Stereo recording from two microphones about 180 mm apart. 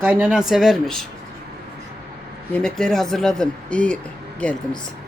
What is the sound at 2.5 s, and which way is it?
Speech, 5° left (ahead or behind).